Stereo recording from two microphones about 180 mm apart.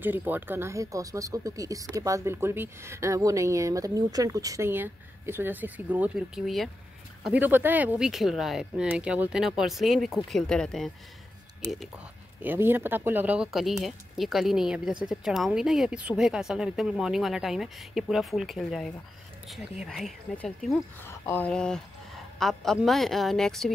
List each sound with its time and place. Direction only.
0.0 s speech: 10° right (ahead or behind)
12.4 s speech: 10° right (ahead or behind)